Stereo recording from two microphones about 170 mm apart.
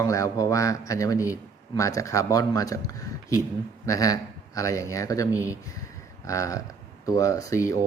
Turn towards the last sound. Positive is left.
turn(degrees=20)  # may be behind; listen again after turning